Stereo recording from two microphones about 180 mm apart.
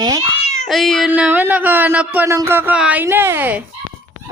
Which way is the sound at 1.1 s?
10° right (ahead or behind).